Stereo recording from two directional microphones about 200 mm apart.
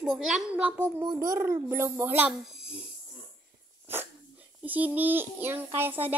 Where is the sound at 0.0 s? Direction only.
5° right (ahead or behind).